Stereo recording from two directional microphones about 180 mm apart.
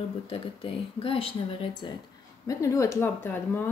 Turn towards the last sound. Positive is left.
turn(degrees=10)  # may be behind; listen again after turning